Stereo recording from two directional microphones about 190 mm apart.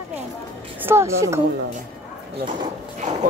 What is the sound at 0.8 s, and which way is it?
Speech, 15° right (ahead or behind).